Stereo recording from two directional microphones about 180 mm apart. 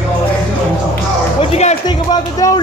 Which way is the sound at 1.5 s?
40° left (ahead or behind).